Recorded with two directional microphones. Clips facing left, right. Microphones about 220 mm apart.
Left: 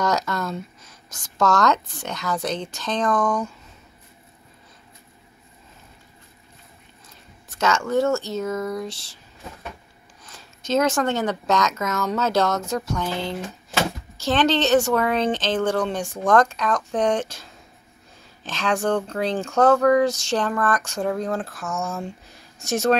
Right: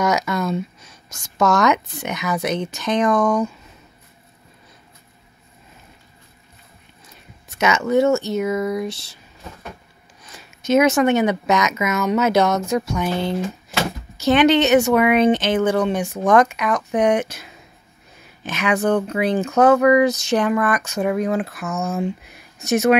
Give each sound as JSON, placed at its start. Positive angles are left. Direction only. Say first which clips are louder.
{"t": 0.0, "sound": "speech", "louder": "right 3 dB", "side_deg": -10}
{"t": 7.5, "sound": "speech", "louder": "right 4 dB", "side_deg": -10}
{"t": 10.7, "sound": "speech", "louder": "right 6 dB", "side_deg": -10}
{"t": 18.5, "sound": "speech", "louder": "right 4 dB", "side_deg": -10}
{"t": 21.9, "sound": "speech", "louder": "right 8 dB", "side_deg": -20}